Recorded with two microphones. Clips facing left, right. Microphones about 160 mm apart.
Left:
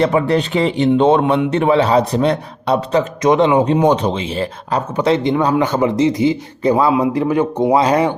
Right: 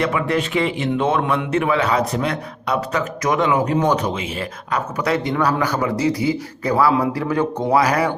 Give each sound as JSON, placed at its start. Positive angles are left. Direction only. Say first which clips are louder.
{"t": 0.0, "sound": "speech", "louder": "left 5 dB", "side_deg": 35}